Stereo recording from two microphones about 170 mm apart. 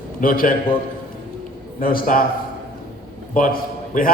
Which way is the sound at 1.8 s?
60° left (ahead or behind).